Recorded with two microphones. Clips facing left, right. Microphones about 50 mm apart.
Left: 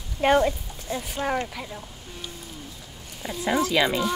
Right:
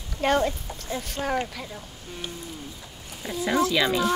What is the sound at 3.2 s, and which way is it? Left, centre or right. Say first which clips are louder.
Speech: right 1 dB; centre.